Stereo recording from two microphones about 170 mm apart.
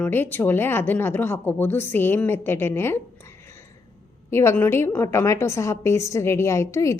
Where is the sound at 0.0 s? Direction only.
10° left (ahead or behind).